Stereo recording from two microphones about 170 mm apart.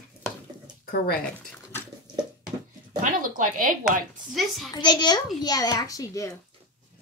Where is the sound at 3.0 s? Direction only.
50° right (ahead or behind).